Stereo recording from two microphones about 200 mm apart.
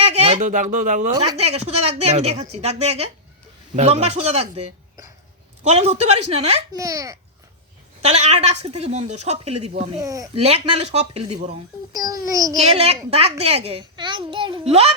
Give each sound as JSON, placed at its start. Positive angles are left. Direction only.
{"t": 0.0, "sound": "a woman's voice", "side_deg": -30}
{"t": 6.7, "sound": "a child's voice", "side_deg": -15}
{"t": 8.0, "sound": "a woman's voice", "side_deg": -30}
{"t": 10.0, "sound": "a child's voice", "side_deg": -15}
{"t": 10.3, "sound": "a woman's voice", "side_deg": -30}
{"t": 11.9, "sound": "a child's voice", "side_deg": -20}
{"t": 12.6, "sound": "a child's voice", "side_deg": -30}